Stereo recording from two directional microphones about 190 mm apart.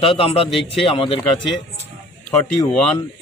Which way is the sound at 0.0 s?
30° left (ahead or behind).